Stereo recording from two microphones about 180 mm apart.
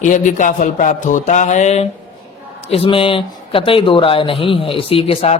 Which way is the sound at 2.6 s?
30° left (ahead or behind).